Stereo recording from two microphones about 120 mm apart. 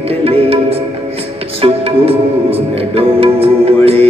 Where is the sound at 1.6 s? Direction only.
55° right (ahead or behind).